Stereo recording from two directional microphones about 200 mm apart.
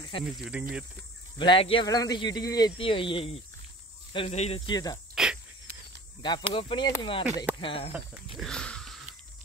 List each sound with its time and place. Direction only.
0.2 s speech: 5° right (ahead or behind)
1.4 s speech: 25° left (ahead or behind)
5.1 s dog: 5° right (ahead or behind)
6.2 s speech: 25° left (ahead or behind)
8.4 s wheeze: 5° left (ahead or behind)